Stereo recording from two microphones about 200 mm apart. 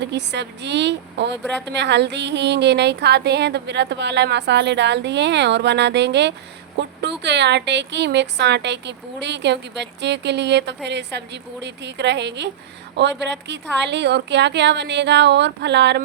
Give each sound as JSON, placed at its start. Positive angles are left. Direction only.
{"t": 0.0, "sound": "a woman's voice", "side_deg": -60}